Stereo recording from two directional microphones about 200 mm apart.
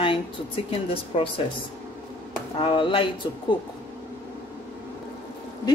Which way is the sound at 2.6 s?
25° left (ahead or behind).